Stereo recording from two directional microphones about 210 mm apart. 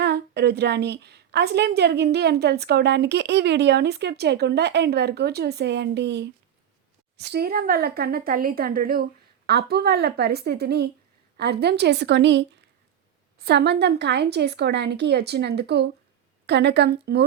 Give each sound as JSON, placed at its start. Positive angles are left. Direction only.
{"t": 0.0, "sound": "a woman's voice", "side_deg": -50}